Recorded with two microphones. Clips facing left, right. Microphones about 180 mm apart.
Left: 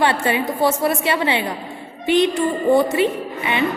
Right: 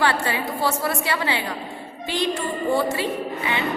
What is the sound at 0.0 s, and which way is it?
A woman's voice, 20° left (ahead or behind).